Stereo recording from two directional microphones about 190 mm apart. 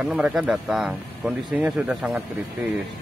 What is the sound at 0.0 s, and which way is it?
Speech, 5° right (ahead or behind).